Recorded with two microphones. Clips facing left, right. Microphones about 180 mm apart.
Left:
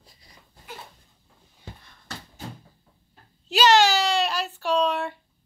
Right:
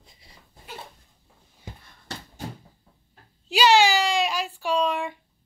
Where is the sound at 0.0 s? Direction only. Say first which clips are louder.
Right 1 dB; 25° right (ahead or behind).